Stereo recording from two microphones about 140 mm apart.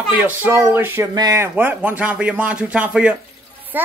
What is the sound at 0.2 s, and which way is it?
A child's voice, 15° right (ahead or behind).